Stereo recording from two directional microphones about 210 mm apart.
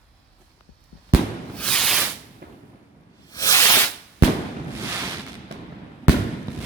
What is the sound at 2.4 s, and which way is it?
Fireworks, 50° right (ahead or behind).